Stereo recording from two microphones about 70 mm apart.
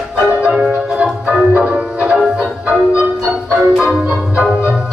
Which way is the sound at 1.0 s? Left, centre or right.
Centre.